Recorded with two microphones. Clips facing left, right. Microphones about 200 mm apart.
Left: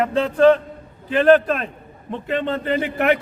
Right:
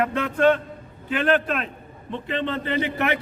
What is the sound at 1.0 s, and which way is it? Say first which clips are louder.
A man's voice: left 7 dB; 40° left (ahead or behind).